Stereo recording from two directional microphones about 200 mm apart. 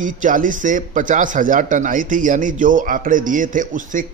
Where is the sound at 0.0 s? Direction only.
40° right (ahead or behind).